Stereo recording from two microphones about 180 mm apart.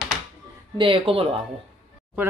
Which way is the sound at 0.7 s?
30° right (ahead or behind).